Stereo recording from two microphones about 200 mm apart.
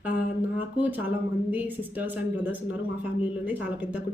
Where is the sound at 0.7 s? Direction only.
10° right (ahead or behind).